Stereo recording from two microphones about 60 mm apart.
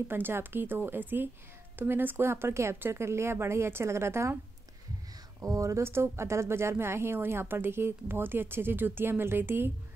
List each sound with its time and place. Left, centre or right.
0.1 s speech: right
5.4 s speech: right
5.9 s speech: right